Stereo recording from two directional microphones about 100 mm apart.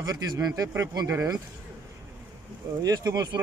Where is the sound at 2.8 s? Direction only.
40° right (ahead or behind).